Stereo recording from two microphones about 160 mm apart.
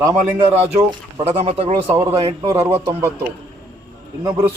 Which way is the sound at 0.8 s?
20° right (ahead or behind).